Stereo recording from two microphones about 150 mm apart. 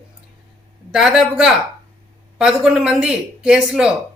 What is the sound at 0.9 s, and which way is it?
A man's voice, 5° right (ahead or behind).